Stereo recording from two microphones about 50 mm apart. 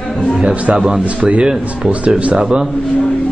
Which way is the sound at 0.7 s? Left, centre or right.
Centre.